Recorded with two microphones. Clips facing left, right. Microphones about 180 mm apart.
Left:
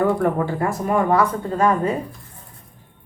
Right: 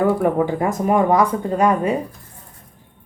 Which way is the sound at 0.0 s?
10° right (ahead or behind).